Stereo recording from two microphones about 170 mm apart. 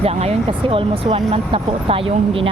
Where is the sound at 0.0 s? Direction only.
35° right (ahead or behind).